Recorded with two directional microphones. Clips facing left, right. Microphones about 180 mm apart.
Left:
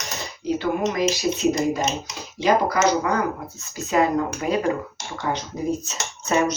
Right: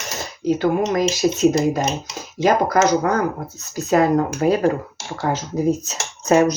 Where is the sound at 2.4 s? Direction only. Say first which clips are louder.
Right 3 dB; 45° right (ahead or behind).